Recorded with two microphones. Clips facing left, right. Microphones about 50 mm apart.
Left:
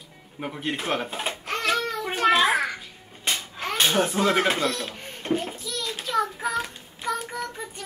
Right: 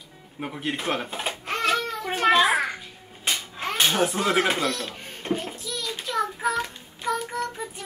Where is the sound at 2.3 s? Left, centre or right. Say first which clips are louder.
Right 2 dB; centre.